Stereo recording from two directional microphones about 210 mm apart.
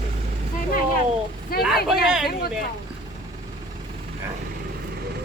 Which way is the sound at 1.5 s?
45° left (ahead or behind).